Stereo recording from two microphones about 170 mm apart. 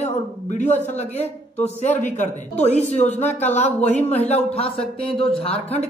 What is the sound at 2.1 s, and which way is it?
Speech, 40° left (ahead or behind).